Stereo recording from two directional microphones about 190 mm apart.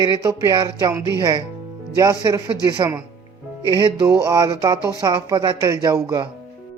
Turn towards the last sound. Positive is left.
turn(degrees=-20)  # may be behind; listen again after turning